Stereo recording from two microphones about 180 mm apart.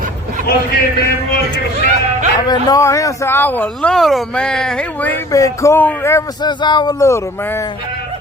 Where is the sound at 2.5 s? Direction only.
20° left (ahead or behind).